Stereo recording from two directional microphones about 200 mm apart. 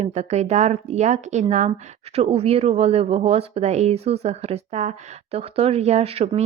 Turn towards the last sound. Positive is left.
turn(degrees=-30)  # may be behind; listen again after turning